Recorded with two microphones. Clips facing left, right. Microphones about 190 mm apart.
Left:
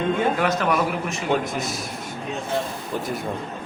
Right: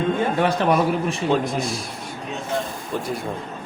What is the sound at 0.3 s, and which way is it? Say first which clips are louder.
Speech: right 3 dB; 30° right (ahead or behind).